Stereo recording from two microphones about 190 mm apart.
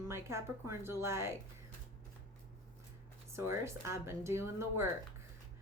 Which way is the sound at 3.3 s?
15° right (ahead or behind).